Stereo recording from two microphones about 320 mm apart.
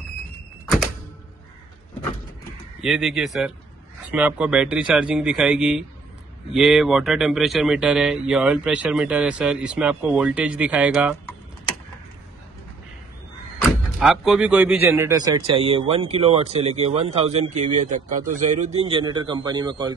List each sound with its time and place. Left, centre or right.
2.8 s speech: centre
13.9 s speech: centre